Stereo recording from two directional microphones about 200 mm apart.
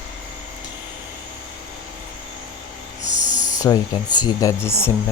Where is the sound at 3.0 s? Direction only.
40° left (ahead or behind).